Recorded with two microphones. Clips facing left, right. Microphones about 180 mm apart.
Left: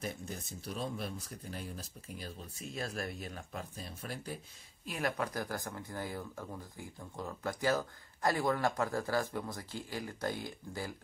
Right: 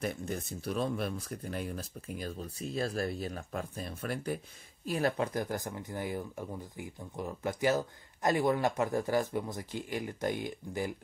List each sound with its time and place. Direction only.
0.0 s speech: 60° right (ahead or behind)
2.7 s speech: 35° right (ahead or behind); by 4.4 s 60° right (ahead or behind)
4.8 s speech: 35° right (ahead or behind)
5.1 s speech: 25° right (ahead or behind)